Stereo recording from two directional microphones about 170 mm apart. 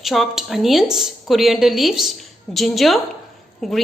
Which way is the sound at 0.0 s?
Centre (ahead or behind).